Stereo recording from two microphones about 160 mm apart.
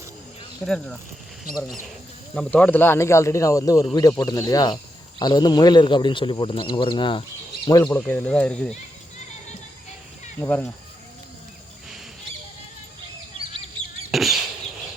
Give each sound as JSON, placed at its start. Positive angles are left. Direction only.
{"t": 0.6, "sound": "speech", "side_deg": 0}
{"t": 2.3, "sound": "speech", "side_deg": 5}
{"t": 10.4, "sound": "speech", "side_deg": 15}
{"t": 14.1, "sound": "a sound", "side_deg": 0}